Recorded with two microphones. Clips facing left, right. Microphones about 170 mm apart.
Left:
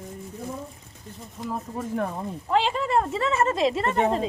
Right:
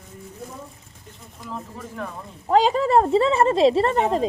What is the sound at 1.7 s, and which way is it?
Speech, 45° left (ahead or behind).